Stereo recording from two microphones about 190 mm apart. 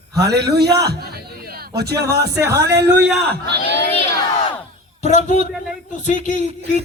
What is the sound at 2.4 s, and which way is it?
Speech, 15° right (ahead or behind).